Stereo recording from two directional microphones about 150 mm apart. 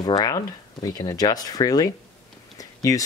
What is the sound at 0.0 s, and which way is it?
Speech, 25° left (ahead or behind).